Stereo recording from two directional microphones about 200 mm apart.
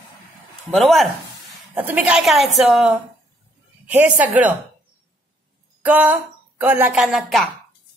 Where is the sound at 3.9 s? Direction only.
5° right (ahead or behind).